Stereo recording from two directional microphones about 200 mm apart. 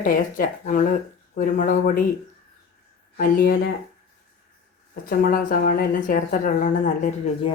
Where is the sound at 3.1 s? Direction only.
45° left (ahead or behind).